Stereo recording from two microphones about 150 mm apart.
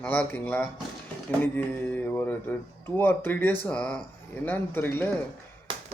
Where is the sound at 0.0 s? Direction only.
10° left (ahead or behind).